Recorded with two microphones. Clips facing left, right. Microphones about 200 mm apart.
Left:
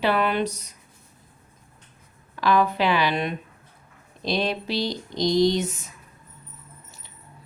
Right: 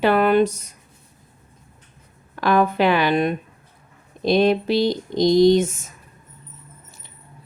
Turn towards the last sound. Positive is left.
turn(degrees=-50)  # may be behind; listen again after turning